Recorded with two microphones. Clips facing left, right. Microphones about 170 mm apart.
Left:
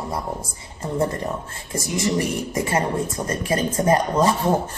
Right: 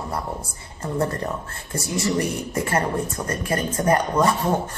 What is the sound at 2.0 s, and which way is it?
Speech, 20° left (ahead or behind).